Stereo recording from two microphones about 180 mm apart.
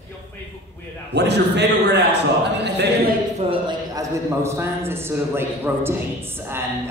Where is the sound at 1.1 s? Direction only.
70° right (ahead or behind).